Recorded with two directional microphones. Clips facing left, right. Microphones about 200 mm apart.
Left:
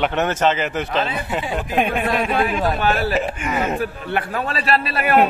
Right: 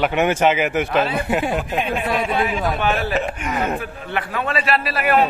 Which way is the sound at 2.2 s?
55° left (ahead or behind).